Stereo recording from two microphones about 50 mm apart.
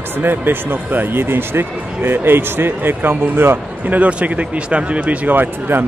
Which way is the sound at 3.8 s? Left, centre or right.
Right.